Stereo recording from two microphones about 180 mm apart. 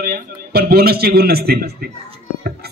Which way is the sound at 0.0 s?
60° right (ahead or behind).